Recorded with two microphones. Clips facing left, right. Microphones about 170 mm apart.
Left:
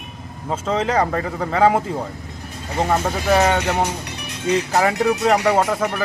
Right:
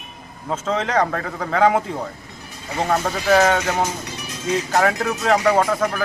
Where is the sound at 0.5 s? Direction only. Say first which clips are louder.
Left 1 dB; 10° left (ahead or behind).